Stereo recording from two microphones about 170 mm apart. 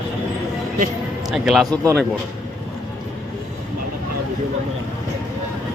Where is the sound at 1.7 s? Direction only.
20° right (ahead or behind).